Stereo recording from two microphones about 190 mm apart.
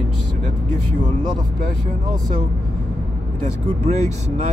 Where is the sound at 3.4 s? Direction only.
35° right (ahead or behind).